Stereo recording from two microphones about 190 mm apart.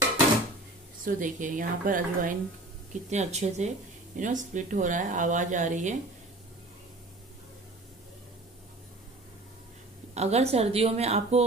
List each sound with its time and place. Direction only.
1.0 s a woman's voice: 45° right (ahead or behind)
10.1 s speech: 35° right (ahead or behind)